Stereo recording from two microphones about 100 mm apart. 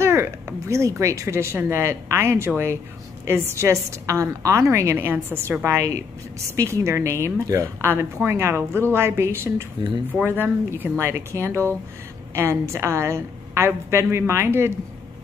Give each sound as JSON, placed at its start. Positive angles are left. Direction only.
{"t": 0.0, "sound": "speech", "side_deg": -25}